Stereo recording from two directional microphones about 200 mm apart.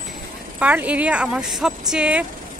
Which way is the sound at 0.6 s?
5° right (ahead or behind).